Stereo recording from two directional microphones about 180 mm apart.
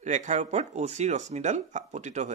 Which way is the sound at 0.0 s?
40° right (ahead or behind).